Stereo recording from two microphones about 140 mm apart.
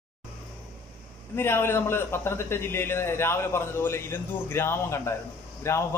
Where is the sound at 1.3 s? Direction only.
15° left (ahead or behind).